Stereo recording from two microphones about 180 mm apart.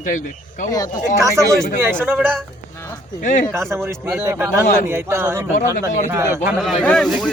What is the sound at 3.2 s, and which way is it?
Speech, 45° left (ahead or behind).